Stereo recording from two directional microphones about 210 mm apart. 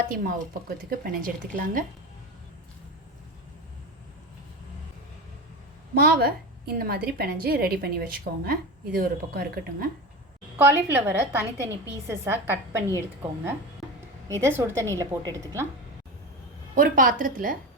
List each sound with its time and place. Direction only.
0.1 s a woman's voice: 45° right (ahead or behind)
6.0 s a woman's voice: 50° right (ahead or behind)
10.6 s a woman's voice: 10° right (ahead or behind)
14.3 s a woman's voice: 15° right (ahead or behind)
16.7 s speech: 40° right (ahead or behind)